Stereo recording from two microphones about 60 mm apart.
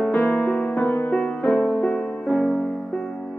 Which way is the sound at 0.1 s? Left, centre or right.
Left.